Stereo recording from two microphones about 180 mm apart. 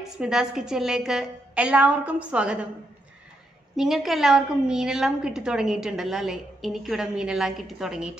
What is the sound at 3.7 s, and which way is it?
A woman's voice, centre (ahead or behind).